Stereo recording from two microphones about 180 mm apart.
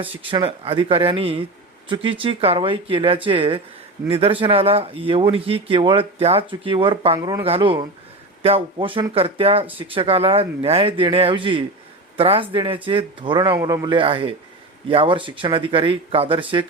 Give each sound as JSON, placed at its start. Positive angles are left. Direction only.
{"t": 0.0, "sound": "a man's voice", "side_deg": -30}
{"t": 7.2, "sound": "a man's voice", "side_deg": -20}
{"t": 7.4, "sound": "a man's voice", "side_deg": -30}